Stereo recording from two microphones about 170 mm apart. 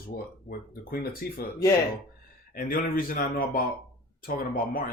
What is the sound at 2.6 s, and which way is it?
Speech, 55° left (ahead or behind).